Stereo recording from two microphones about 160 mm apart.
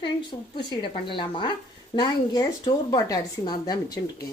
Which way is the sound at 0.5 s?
30° left (ahead or behind).